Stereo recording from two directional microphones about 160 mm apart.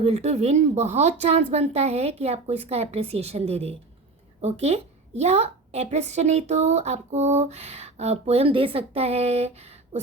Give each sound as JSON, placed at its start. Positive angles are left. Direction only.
{"t": 0.0, "sound": "a woman's voice", "side_deg": -45}